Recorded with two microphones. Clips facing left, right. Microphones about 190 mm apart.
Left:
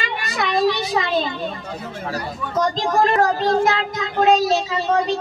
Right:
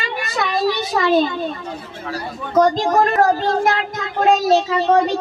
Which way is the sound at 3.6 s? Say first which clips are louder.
Even; 50° right (ahead or behind).